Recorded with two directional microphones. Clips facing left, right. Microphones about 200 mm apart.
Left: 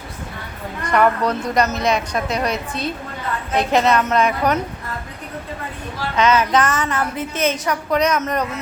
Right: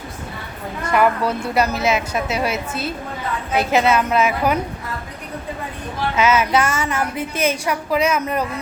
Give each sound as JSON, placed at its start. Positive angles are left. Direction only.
{"t": 0.9, "sound": "a woman's voice", "side_deg": -5}
{"t": 6.1, "sound": "a woman's voice", "side_deg": -10}